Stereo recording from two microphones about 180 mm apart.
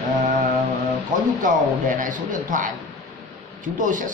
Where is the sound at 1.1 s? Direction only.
45° right (ahead or behind).